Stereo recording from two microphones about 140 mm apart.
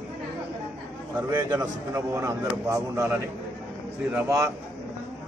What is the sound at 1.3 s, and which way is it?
A man's voice, 25° right (ahead or behind).